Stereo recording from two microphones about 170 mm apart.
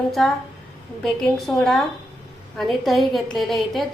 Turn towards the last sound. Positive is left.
turn(degrees=0)  # may be behind; listen again after turning